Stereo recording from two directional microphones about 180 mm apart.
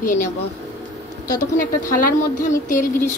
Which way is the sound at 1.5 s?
50° left (ahead or behind).